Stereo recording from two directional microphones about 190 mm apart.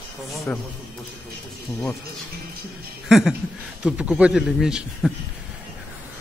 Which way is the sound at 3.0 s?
Centre (ahead or behind).